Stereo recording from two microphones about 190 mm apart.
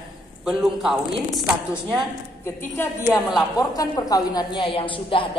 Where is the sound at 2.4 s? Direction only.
15° left (ahead or behind).